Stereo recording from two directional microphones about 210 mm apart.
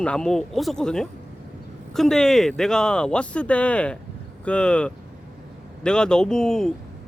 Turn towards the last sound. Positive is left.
turn(degrees=5)  # may be behind; listen again after turning